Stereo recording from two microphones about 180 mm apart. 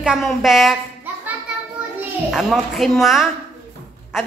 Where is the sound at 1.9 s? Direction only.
Centre (ahead or behind).